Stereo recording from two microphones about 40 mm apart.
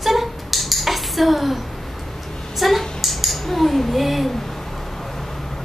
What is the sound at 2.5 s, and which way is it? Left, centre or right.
Speech, centre.